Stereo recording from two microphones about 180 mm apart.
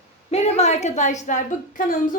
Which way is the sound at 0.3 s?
35° left (ahead or behind).